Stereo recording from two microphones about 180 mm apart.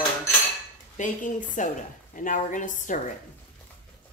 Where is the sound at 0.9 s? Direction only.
45° left (ahead or behind).